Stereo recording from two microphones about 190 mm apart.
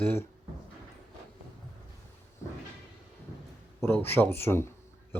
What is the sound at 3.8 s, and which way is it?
Speech, 10° left (ahead or behind).